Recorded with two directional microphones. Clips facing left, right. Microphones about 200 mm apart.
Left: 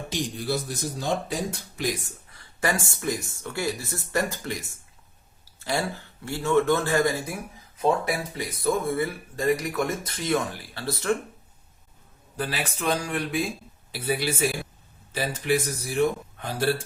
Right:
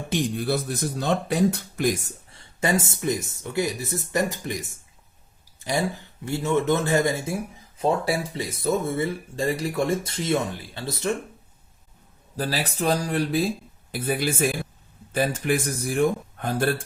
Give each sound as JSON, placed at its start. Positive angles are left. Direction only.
{"t": 0.1, "sound": "speech", "side_deg": -55}
{"t": 2.3, "sound": "speech", "side_deg": -25}
{"t": 12.4, "sound": "speech", "side_deg": -40}
{"t": 13.9, "sound": "speech", "side_deg": -50}